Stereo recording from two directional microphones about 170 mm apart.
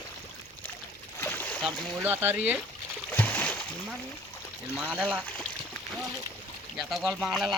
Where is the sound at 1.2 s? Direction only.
10° left (ahead or behind).